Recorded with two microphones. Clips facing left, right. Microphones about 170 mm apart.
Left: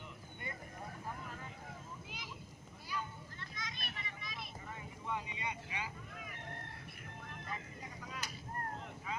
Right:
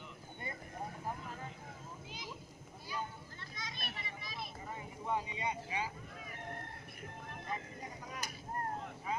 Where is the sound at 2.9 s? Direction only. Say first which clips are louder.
Right 1 dB; 35° right (ahead or behind).